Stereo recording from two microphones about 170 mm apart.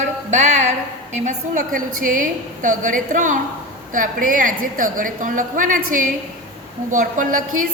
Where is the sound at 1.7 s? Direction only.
50° right (ahead or behind).